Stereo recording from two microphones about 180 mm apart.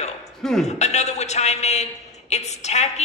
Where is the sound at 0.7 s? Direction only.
40° left (ahead or behind).